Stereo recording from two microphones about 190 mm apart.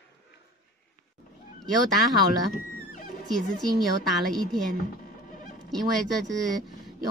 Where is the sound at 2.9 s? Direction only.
45° left (ahead or behind).